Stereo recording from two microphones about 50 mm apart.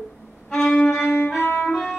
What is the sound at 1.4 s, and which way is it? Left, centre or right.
Music, left.